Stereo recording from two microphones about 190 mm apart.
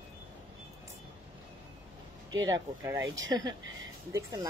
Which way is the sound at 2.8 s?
15° right (ahead or behind).